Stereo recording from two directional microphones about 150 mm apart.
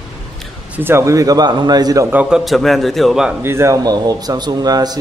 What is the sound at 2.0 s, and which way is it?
A man's voice, 10° right (ahead or behind).